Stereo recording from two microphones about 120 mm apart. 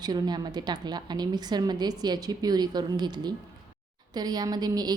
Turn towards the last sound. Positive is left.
turn(degrees=-35)  # may be behind; listen again after turning